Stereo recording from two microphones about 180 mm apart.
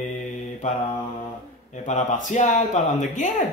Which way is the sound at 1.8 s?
45° left (ahead or behind).